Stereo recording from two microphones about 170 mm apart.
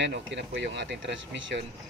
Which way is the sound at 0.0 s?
90° right.